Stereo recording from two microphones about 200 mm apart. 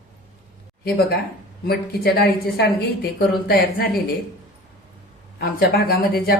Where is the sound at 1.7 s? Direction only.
50° left (ahead or behind).